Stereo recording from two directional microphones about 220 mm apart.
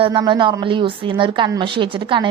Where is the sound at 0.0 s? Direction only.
20° right (ahead or behind).